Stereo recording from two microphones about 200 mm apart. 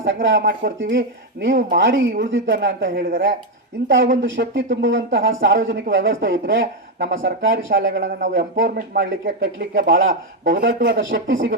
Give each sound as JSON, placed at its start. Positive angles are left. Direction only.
{"t": 0.0, "sound": "speech", "side_deg": -65}
{"t": 3.8, "sound": "speech", "side_deg": -65}
{"t": 8.6, "sound": "speech", "side_deg": -45}
{"t": 9.4, "sound": "speech", "side_deg": -65}